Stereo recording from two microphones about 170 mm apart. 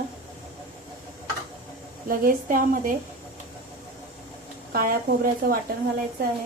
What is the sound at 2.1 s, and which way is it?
Speech, 55° right (ahead or behind).